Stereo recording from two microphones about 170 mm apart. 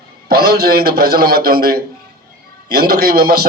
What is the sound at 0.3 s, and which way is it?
A man's voice, 65° right (ahead or behind).